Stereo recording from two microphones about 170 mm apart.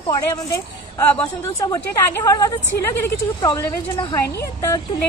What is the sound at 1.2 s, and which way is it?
A woman's voice, 20° left (ahead or behind).